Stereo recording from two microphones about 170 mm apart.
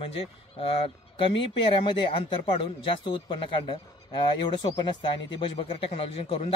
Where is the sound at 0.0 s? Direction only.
35° left (ahead or behind).